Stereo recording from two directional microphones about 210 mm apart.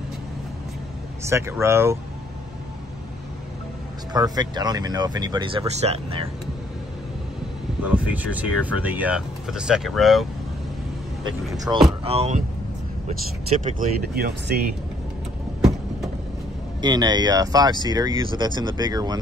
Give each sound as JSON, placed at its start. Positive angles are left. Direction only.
{"t": 1.2, "sound": "speech", "side_deg": -10}
{"t": 4.1, "sound": "speech", "side_deg": -20}
{"t": 7.9, "sound": "speech", "side_deg": -5}
{"t": 11.5, "sound": "speech", "side_deg": -15}
{"t": 12.0, "sound": "speech", "side_deg": -30}
{"t": 13.7, "sound": "speech", "side_deg": -45}
{"t": 16.8, "sound": "speech", "side_deg": -20}